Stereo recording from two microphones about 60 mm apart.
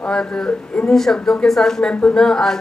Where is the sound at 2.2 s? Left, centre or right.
Centre.